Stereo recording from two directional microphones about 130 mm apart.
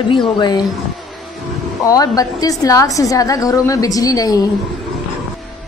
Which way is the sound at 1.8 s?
30° left (ahead or behind).